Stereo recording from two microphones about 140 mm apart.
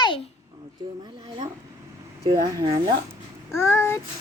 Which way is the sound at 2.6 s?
40° right (ahead or behind).